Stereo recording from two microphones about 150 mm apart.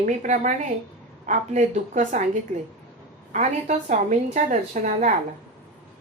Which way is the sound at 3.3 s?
55° right (ahead or behind).